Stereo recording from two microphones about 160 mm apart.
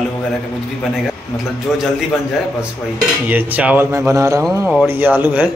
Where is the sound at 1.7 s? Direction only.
5° right (ahead or behind).